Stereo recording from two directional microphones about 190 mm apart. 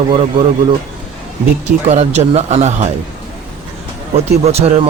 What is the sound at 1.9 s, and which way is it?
Speech, 35° right (ahead or behind).